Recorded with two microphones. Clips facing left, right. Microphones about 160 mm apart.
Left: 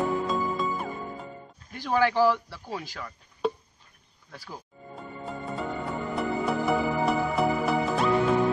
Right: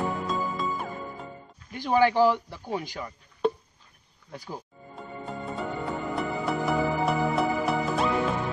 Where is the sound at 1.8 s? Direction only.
15° right (ahead or behind).